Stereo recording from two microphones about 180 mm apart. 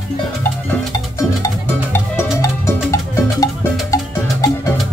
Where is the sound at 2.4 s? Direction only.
15° left (ahead or behind).